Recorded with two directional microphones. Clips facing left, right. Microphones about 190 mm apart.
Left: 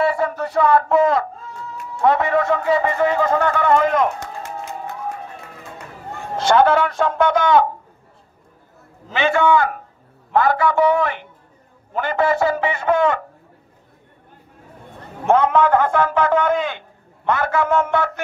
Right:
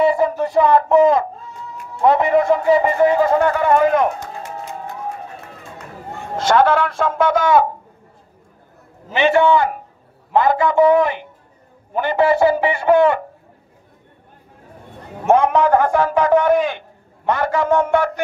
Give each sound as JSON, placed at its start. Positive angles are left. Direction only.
{"t": 0.0, "sound": "a man's voice", "side_deg": -15}
{"t": 6.3, "sound": "a man's voice", "side_deg": 0}
{"t": 9.1, "sound": "a man's voice", "side_deg": -20}
{"t": 15.2, "sound": "a man's voice", "side_deg": -15}